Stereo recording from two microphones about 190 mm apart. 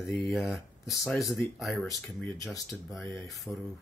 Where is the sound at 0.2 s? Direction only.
Centre (ahead or behind).